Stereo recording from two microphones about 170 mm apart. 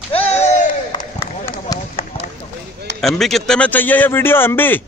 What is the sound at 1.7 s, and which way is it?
Speech, 20° left (ahead or behind).